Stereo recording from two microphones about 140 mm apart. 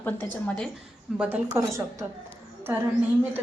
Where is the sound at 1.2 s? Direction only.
10° right (ahead or behind).